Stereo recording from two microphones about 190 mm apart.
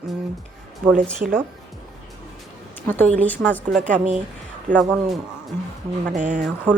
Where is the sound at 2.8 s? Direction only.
10° left (ahead or behind).